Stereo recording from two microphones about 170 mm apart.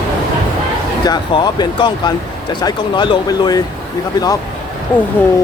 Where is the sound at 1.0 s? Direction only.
25° left (ahead or behind).